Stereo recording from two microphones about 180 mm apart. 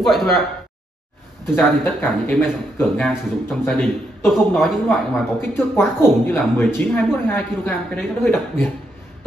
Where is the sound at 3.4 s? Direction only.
10° left (ahead or behind).